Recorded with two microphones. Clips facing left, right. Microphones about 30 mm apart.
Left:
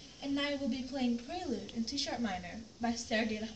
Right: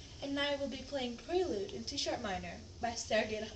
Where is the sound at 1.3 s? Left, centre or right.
Right.